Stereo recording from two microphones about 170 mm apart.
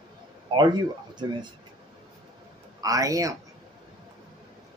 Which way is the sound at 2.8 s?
20° right (ahead or behind).